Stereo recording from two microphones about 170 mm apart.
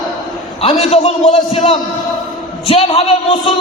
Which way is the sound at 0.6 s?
35° left (ahead or behind).